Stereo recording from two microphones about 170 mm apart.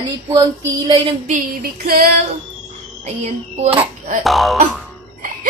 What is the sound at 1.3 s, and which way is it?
Speech, 55° right (ahead or behind).